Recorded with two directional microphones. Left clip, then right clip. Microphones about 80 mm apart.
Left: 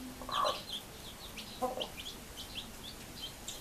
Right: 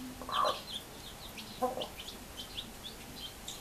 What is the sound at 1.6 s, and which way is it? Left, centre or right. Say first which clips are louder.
Chicken: right 2 dB; centre.